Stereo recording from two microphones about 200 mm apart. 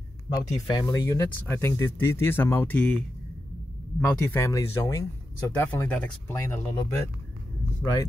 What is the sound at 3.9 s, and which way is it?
Speech, 5° left (ahead or behind).